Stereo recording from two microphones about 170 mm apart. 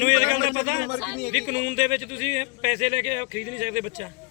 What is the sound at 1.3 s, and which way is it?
Speech, 40° right (ahead or behind).